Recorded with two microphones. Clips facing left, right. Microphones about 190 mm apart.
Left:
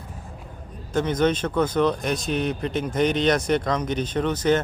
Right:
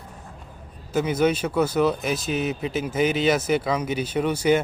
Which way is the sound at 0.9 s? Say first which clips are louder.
Even; 10° right (ahead or behind).